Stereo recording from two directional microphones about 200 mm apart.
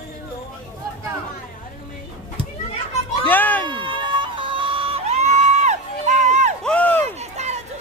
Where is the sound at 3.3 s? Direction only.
10° left (ahead or behind).